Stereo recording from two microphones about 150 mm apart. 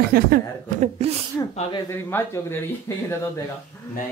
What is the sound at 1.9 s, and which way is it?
Speech, 15° left (ahead or behind).